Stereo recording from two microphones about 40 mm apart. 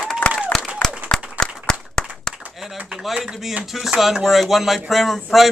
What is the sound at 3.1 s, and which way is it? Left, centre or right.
Speech, centre.